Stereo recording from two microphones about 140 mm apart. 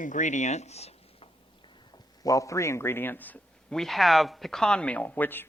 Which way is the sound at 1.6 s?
30° left (ahead or behind).